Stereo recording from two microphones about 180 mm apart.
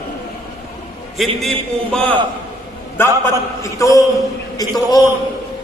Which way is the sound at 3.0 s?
15° left (ahead or behind).